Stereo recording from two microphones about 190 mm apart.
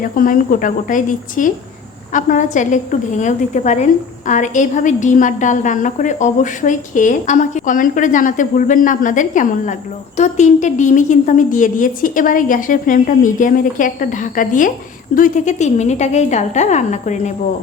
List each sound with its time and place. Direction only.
0.0 s a woman's voice: 45° left (ahead or behind)